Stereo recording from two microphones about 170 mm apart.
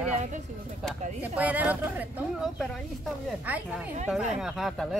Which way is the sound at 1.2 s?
10° right (ahead or behind).